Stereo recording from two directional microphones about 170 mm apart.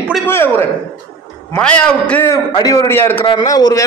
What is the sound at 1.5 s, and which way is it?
Speech, 5° left (ahead or behind).